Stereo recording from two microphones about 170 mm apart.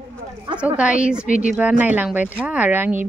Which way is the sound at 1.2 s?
50° left (ahead or behind).